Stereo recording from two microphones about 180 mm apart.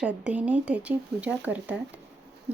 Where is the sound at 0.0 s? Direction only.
10° right (ahead or behind).